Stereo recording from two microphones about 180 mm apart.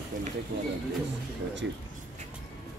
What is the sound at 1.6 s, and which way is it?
Speech, 90° right.